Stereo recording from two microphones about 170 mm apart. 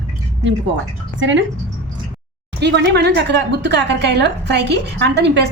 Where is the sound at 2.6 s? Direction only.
85° right.